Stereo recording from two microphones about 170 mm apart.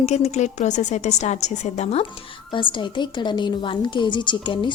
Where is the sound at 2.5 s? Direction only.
30° left (ahead or behind).